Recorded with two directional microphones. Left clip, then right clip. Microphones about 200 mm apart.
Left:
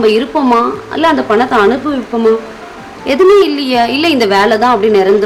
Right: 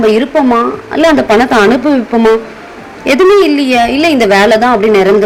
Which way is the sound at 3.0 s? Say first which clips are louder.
Right 1 dB; 15° right (ahead or behind).